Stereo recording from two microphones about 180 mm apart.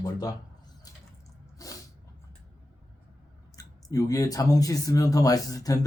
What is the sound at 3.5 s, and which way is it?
Speech, 20° left (ahead or behind).